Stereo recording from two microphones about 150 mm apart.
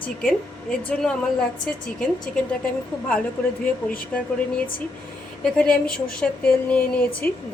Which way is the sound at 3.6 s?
10° left (ahead or behind).